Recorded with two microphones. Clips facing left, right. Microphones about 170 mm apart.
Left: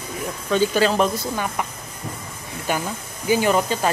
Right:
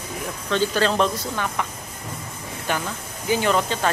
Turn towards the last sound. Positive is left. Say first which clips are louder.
# left 2 dB
turn(degrees=10)  # may be behind; listen again after turning